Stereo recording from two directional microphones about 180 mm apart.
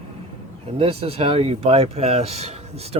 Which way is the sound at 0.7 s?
35° right (ahead or behind).